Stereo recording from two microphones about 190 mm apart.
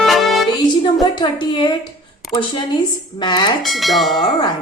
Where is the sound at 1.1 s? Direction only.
25° left (ahead or behind).